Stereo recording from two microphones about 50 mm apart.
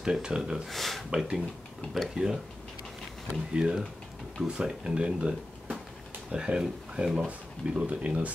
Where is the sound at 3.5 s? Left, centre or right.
Centre.